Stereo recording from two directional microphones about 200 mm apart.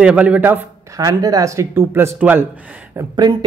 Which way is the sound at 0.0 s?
5° right (ahead or behind).